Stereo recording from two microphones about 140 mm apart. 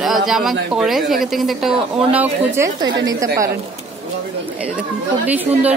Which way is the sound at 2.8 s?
25° right (ahead or behind).